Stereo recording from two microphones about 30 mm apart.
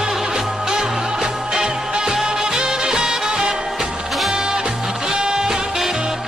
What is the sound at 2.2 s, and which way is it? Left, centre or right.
Music, centre.